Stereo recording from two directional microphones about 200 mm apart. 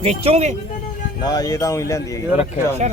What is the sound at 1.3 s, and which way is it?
Speech, 20° left (ahead or behind).